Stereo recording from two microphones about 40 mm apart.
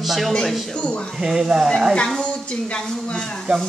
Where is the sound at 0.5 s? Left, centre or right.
Centre.